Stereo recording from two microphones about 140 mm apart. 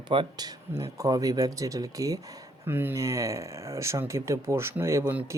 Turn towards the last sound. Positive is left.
turn(degrees=-15)  # may be behind; listen again after turning